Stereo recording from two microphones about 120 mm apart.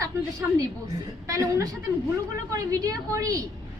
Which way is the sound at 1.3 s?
25° right (ahead or behind).